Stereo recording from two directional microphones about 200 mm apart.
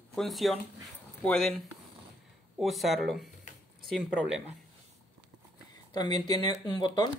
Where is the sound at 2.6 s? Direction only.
Centre (ahead or behind).